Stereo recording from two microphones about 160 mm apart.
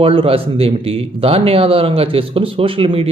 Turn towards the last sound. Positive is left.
turn(degrees=-35)  # may be behind; listen again after turning